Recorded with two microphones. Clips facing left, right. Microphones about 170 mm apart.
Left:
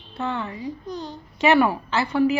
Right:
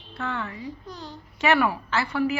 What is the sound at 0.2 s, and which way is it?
A child's voice, 20° left (ahead or behind).